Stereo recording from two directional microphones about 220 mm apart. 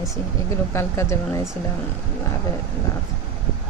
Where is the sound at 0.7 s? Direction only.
10° left (ahead or behind).